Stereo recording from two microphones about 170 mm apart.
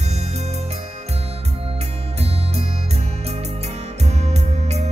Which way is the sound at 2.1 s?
35° right (ahead or behind).